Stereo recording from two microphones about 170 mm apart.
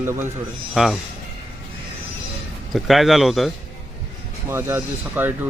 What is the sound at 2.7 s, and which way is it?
Speech, centre (ahead or behind).